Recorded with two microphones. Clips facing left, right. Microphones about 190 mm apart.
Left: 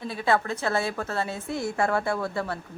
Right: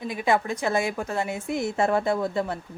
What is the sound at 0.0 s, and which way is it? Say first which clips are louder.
A woman's voice: right 1 dB; 15° right (ahead or behind).